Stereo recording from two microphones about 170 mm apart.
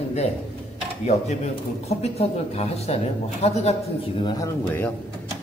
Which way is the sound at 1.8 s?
40° left (ahead or behind).